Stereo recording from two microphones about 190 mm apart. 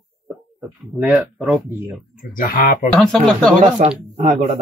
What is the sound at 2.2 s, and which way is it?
Speech, 45° left (ahead or behind).